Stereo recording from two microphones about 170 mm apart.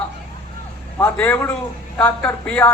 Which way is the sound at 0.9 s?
15° left (ahead or behind).